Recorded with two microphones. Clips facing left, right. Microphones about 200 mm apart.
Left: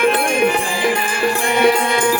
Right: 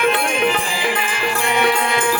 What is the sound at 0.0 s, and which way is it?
Music, 50° left (ahead or behind).